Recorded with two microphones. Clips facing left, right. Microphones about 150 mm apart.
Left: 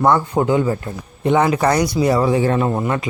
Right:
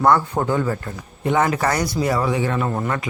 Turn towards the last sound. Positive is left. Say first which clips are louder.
# left 4 dB
turn(degrees=20)  # may be behind; listen again after turning